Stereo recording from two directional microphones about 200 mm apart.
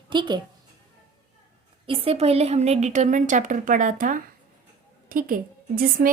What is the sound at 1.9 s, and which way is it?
A woman's voice, 30° right (ahead or behind).